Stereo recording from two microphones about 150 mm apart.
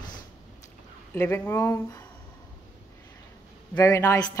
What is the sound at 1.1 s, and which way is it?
Speech, 15° left (ahead or behind).